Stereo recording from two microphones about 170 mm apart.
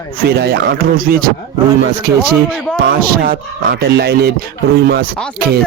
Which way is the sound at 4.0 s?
70° right (ahead or behind).